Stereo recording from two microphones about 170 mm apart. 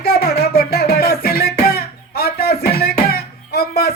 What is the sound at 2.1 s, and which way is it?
Music, 65° left (ahead or behind).